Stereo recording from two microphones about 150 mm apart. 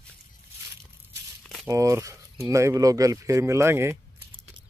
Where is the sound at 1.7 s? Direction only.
20° right (ahead or behind).